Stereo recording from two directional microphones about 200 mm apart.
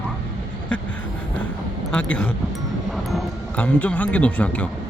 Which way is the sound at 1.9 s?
5° left (ahead or behind).